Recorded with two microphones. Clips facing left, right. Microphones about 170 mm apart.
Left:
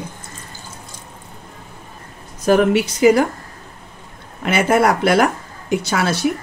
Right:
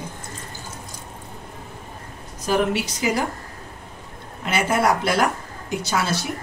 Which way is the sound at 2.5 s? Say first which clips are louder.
Left 7 dB; 55° left (ahead or behind).